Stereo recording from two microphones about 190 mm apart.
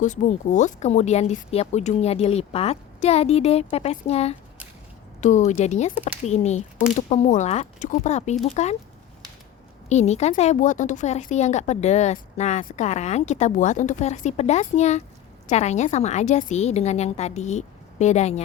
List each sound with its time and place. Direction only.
0.0 s speech: 40° left (ahead or behind)
9.9 s speech: 35° left (ahead or behind)